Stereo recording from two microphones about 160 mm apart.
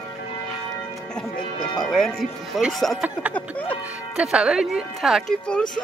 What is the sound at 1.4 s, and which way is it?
Music, 30° left (ahead or behind).